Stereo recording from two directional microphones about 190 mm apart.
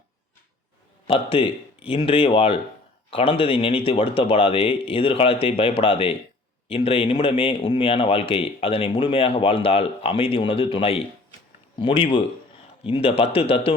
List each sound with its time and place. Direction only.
1.0 s speech: 30° left (ahead or behind)